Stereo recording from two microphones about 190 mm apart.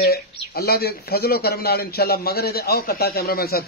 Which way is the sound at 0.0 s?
55° left (ahead or behind).